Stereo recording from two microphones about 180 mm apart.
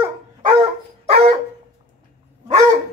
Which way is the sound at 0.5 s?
30° right (ahead or behind).